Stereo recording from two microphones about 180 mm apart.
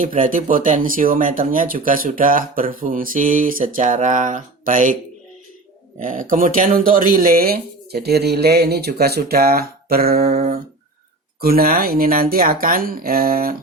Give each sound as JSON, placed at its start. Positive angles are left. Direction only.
{"t": 0.0, "sound": "speech", "side_deg": -45}
{"t": 6.0, "sound": "speech", "side_deg": -50}
{"t": 11.3, "sound": "speech", "side_deg": -55}